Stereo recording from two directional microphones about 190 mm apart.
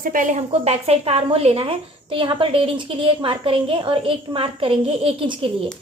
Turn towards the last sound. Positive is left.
turn(degrees=-25)  # may be behind; listen again after turning